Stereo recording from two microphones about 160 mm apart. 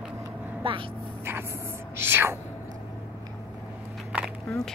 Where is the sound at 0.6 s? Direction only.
35° right (ahead or behind).